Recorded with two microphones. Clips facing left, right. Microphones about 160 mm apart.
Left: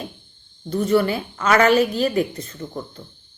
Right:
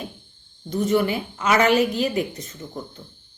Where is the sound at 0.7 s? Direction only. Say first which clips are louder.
Left 2 dB; 15° right (ahead or behind).